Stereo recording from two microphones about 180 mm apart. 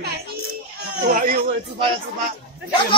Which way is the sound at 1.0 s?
50° right (ahead or behind).